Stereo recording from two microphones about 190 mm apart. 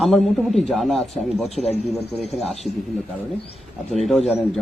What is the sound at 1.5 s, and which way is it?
Speech, 35° left (ahead or behind).